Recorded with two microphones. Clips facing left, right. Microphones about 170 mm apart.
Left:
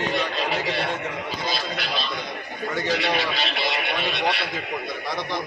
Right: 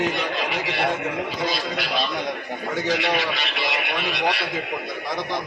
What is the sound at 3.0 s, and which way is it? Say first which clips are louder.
Speech: right 1 dB; 35° left (ahead or behind).